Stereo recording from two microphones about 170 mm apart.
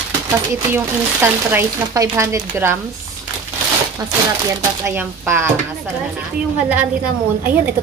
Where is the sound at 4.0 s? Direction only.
20° right (ahead or behind).